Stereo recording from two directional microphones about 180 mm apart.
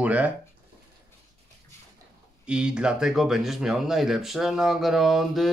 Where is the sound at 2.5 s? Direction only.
5° right (ahead or behind).